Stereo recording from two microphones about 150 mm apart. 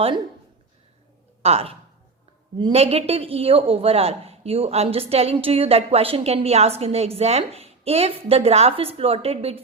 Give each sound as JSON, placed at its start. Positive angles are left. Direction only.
{"t": 1.4, "sound": "speech", "side_deg": -40}
{"t": 2.7, "sound": "a woman's voice", "side_deg": -40}